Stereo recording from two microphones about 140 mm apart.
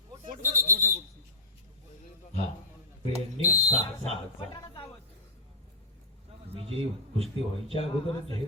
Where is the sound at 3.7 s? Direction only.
45° right (ahead or behind).